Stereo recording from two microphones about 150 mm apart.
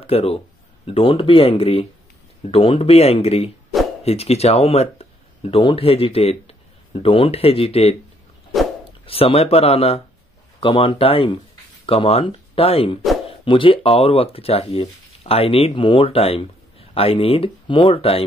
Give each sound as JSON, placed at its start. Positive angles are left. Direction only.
{"t": 0.0, "sound": "speech", "side_deg": 40}
{"t": 9.0, "sound": "speech", "side_deg": 40}